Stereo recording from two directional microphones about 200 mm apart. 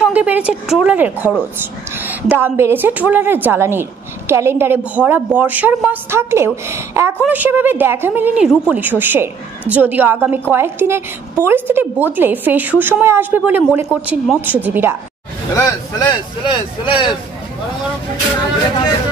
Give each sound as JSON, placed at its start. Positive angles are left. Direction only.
{"t": 0.0, "sound": "a woman's voice", "side_deg": -5}
{"t": 15.5, "sound": "speech", "side_deg": 15}